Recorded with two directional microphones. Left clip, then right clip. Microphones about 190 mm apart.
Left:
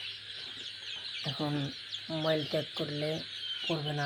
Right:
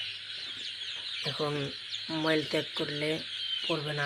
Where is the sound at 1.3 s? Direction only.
20° right (ahead or behind).